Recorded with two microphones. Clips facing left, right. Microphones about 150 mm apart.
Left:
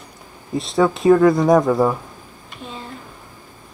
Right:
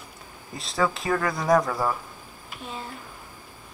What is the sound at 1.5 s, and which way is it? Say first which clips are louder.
Speech: left 7 dB; 20° left (ahead or behind).